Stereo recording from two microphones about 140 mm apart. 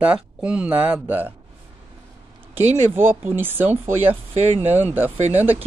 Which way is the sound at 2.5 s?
15° right (ahead or behind).